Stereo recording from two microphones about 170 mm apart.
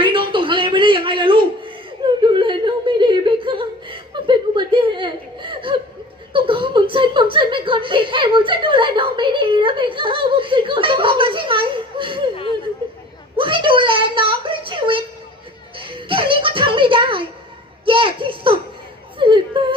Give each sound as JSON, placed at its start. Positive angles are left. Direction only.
{"t": 0.0, "sound": "a sound", "side_deg": -30}
{"t": 2.2, "sound": "yodeling", "side_deg": -30}
{"t": 6.3, "sound": "chuckle", "side_deg": -30}
{"t": 13.3, "sound": "a sound", "side_deg": -30}
{"t": 15.8, "sound": "music", "side_deg": -30}
{"t": 17.8, "sound": "children playing", "side_deg": -30}
{"t": 19.2, "sound": "whimper", "side_deg": -30}
{"t": 19.6, "sound": "yodeling", "side_deg": -30}